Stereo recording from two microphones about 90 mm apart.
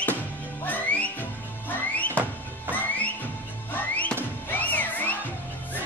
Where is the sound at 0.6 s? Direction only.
15° left (ahead or behind).